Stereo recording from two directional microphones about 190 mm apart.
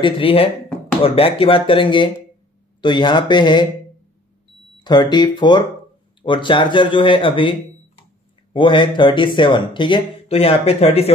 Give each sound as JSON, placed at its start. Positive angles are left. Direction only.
{"t": 0.0, "sound": "speech", "side_deg": 30}
{"t": 4.8, "sound": "speech", "side_deg": 25}
{"t": 8.5, "sound": "speech", "side_deg": 25}